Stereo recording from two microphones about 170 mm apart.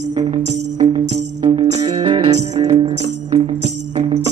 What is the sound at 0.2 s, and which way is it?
Music, 30° right (ahead or behind).